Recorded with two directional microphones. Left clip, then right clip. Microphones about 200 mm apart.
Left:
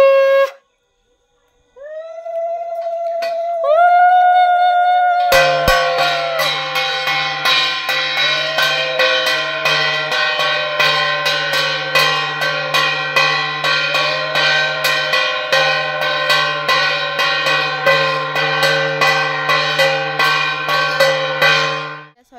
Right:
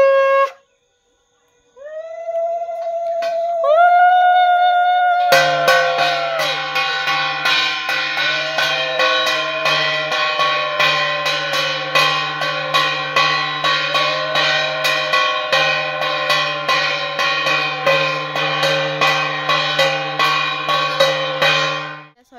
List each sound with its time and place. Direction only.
0.0 s wind instrument: 50° left (ahead or behind)
3.6 s a sound: centre (ahead or behind)
5.3 s music: 40° left (ahead or behind)